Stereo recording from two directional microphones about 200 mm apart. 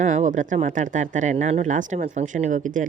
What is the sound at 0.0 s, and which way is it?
Speech, 35° right (ahead or behind).